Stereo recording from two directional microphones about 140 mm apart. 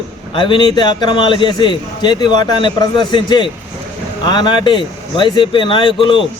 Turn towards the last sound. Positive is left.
turn(degrees=35)  # may be behind; listen again after turning